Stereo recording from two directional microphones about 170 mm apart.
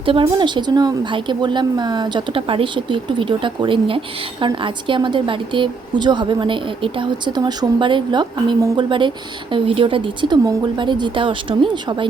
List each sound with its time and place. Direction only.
0.0 s speech: 30° right (ahead or behind)